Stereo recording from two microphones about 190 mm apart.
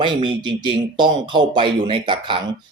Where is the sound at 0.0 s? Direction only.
25° right (ahead or behind).